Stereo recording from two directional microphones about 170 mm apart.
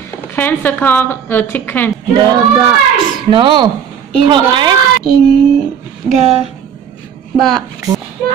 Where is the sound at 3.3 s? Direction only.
30° right (ahead or behind).